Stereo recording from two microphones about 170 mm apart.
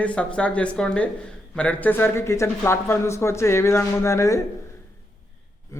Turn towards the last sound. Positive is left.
turn(degrees=15)  # may be behind; listen again after turning